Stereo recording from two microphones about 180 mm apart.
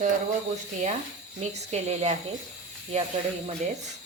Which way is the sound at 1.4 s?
35° right (ahead or behind).